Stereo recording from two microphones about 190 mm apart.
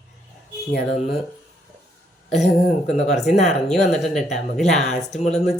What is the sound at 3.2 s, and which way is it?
Speech, 35° left (ahead or behind).